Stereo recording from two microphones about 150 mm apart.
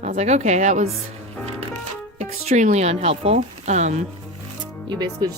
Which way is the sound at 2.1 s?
45° right (ahead or behind).